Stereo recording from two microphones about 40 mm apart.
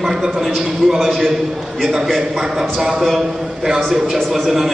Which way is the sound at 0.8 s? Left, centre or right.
Centre.